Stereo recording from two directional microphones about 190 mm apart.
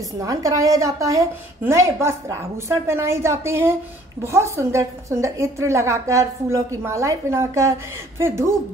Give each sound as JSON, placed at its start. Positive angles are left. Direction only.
{"t": 0.2, "sound": "a woman's voice", "side_deg": -20}